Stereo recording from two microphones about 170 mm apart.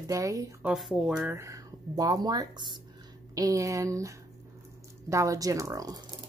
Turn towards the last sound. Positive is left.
turn(degrees=-20)  # may be behind; listen again after turning